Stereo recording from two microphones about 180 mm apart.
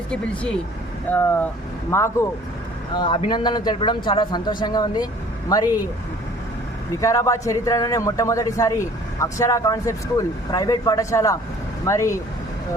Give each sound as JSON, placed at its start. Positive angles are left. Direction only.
{"t": 0.1, "sound": "a man's voice", "side_deg": 5}
{"t": 2.9, "sound": "a man's voice", "side_deg": 25}
{"t": 7.0, "sound": "a man's voice", "side_deg": 15}